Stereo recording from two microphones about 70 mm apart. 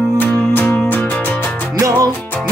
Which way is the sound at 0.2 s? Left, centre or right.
Left.